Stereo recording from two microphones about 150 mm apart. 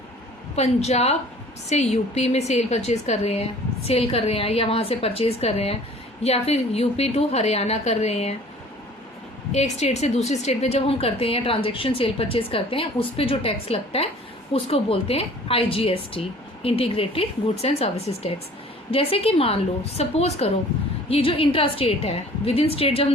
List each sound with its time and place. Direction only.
0.5 s a woman's voice: 45° left (ahead or behind)
9.5 s a woman's voice: 45° left (ahead or behind)